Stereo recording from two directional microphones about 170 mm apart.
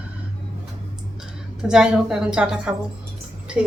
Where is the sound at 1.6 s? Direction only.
5° right (ahead or behind).